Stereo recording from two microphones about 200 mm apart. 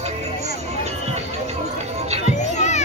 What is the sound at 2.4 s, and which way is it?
Children playing, 35° left (ahead or behind).